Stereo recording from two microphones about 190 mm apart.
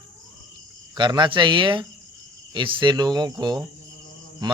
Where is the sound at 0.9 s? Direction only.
20° right (ahead or behind).